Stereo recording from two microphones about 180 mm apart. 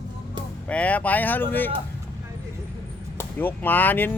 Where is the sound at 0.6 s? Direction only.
5° left (ahead or behind).